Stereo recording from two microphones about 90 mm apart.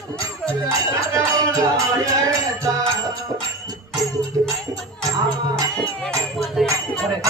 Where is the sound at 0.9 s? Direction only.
35° right (ahead or behind).